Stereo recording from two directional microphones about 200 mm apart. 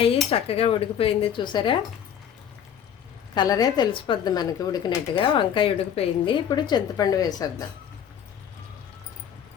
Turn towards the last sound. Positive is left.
turn(degrees=20)  # may be behind; listen again after turning